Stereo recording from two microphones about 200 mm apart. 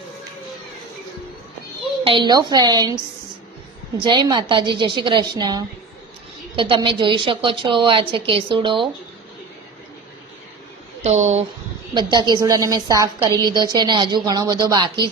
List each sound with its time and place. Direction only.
2.0 s a woman's voice: 25° right (ahead or behind)
4.0 s a woman's voice: 20° right (ahead or behind)
11.0 s speech: 35° right (ahead or behind)
11.9 s a woman's voice: 20° right (ahead or behind)